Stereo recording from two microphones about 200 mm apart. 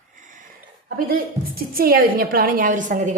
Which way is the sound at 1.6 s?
50° right (ahead or behind).